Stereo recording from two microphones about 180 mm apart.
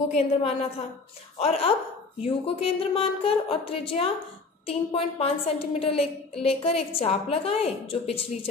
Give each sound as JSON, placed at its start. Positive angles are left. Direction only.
{"t": 0.1, "sound": "a woman's voice", "side_deg": 35}